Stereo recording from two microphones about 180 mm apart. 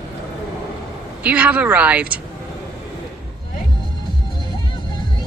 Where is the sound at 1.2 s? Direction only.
5° right (ahead or behind).